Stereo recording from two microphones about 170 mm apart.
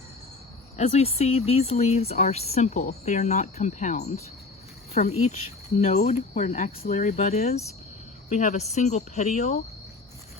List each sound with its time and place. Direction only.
0.8 s speech: 40° left (ahead or behind)